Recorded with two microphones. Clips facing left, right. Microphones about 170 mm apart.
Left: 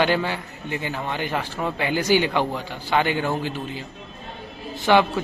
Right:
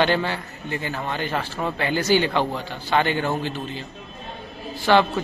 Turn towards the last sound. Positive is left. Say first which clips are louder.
# even
turn(degrees=15)  # may be behind; listen again after turning